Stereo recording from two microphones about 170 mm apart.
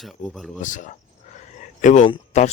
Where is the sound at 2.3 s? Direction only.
45° left (ahead or behind).